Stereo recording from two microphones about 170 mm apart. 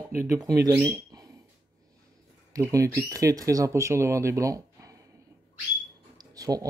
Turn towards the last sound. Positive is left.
turn(degrees=-20)  # may be behind; listen again after turning